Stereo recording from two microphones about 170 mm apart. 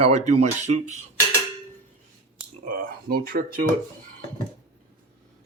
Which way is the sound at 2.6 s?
55° right (ahead or behind).